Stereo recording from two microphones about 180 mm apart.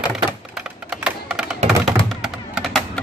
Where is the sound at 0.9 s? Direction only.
5° right (ahead or behind).